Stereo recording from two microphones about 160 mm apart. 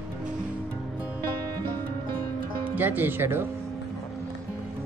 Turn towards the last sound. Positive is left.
turn(degrees=-15)  # may be behind; listen again after turning